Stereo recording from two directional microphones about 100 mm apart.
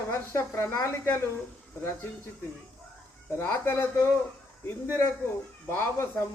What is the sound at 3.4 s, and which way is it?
Speech, 25° left (ahead or behind).